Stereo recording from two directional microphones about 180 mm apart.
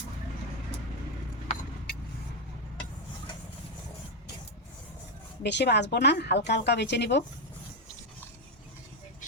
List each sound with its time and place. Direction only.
5.4 s speech: 70° left (ahead or behind)